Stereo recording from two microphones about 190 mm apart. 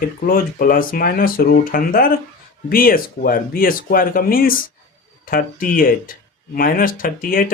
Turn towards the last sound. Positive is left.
turn(degrees=45)  # may be behind; listen again after turning